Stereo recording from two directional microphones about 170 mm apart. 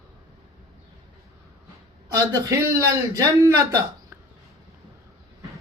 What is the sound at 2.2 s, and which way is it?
A man's voice, 15° right (ahead or behind).